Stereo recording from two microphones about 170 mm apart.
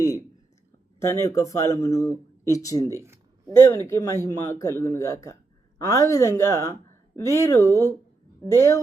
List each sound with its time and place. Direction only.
0.9 s speech: 15° left (ahead or behind)
2.9 s a sound: 15° right (ahead or behind)
3.8 s speech: 15° left (ahead or behind)